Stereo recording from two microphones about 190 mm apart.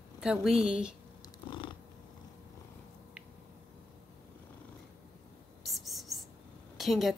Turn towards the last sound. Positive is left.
turn(degrees=0)  # may be behind; listen again after turning